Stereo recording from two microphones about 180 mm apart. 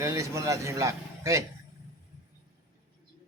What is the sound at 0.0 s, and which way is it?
Speech, 15° right (ahead or behind).